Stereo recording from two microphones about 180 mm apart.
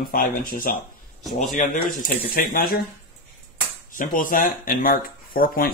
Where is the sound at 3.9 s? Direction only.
50° left (ahead or behind).